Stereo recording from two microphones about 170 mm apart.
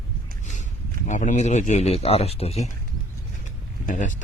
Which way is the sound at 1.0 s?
45° left (ahead or behind).